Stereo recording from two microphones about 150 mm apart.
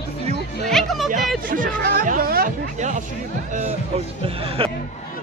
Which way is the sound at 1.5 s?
70° right (ahead or behind).